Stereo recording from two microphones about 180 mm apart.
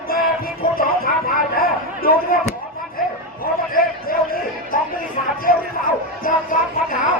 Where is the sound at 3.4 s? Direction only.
55° left (ahead or behind).